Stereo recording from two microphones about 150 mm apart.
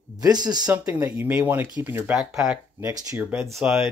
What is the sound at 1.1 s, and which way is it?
Speech, 10° right (ahead or behind).